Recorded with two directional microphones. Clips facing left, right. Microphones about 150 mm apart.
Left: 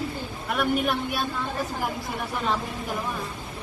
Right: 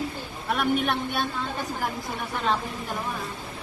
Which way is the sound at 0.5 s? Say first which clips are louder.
Left 1 dB; centre (ahead or behind).